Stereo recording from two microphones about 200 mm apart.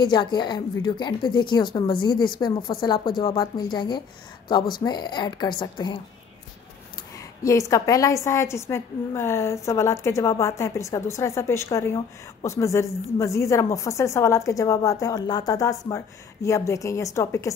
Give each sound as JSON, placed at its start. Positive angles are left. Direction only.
{"t": 0.0, "sound": "a woman's voice", "side_deg": 20}
{"t": 7.4, "sound": "a woman's voice", "side_deg": 15}